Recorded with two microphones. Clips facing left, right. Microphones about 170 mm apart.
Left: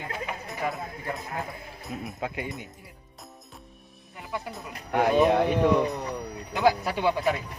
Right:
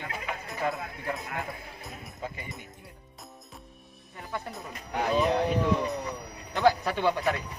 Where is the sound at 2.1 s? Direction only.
70° left (ahead or behind).